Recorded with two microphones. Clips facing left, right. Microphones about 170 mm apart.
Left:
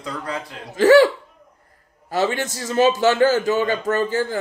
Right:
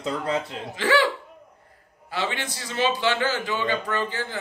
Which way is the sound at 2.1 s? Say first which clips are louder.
Left 7 dB; 45° left (ahead or behind).